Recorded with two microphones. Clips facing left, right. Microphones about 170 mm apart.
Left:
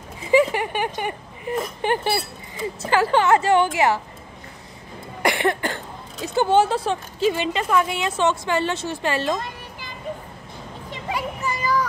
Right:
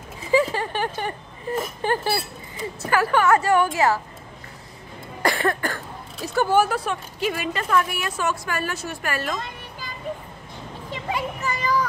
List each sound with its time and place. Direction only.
0.3 s speech: 20° left (ahead or behind)
5.2 s cough: 20° left (ahead or behind)
6.2 s speech: 20° left (ahead or behind)
11.1 s a child's voice: 10° left (ahead or behind)